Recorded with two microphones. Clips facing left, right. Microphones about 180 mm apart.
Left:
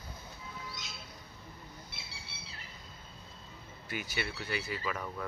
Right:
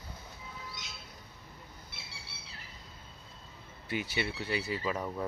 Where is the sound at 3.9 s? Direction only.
25° right (ahead or behind).